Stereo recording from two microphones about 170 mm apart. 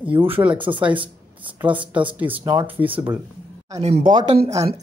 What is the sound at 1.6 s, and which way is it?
Speech, 10° right (ahead or behind).